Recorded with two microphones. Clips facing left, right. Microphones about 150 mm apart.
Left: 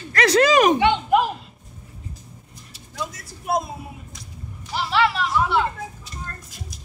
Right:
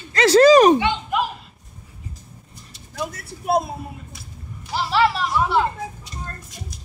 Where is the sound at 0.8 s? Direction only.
60° left (ahead or behind).